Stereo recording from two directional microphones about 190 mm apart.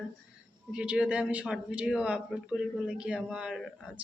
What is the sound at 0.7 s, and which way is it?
Speech, 5° right (ahead or behind).